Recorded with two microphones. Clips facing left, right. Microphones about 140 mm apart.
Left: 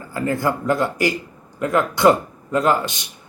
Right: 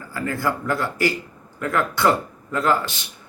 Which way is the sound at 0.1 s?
20° left (ahead or behind).